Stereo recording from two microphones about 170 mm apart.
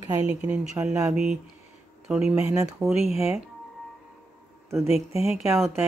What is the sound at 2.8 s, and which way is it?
Speech, centre (ahead or behind).